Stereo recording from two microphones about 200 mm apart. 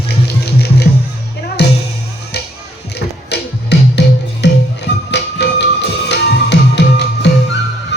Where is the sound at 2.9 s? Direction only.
55° left (ahead or behind).